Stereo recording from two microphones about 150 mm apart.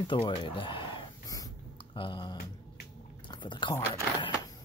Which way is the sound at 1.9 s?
35° left (ahead or behind).